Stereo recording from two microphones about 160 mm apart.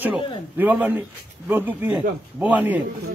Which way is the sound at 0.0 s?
10° right (ahead or behind).